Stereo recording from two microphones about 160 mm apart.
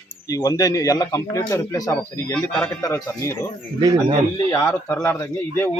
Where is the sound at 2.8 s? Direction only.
20° left (ahead or behind).